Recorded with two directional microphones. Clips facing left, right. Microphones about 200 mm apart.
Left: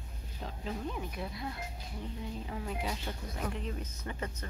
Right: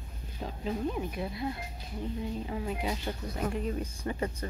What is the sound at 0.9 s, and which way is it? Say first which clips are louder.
Speech: right 5 dB; 25° right (ahead or behind).